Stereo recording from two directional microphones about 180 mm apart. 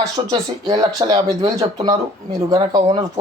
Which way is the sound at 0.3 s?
25° right (ahead or behind).